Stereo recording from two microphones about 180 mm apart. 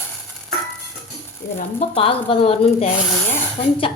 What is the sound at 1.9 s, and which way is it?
Speech, 30° left (ahead or behind).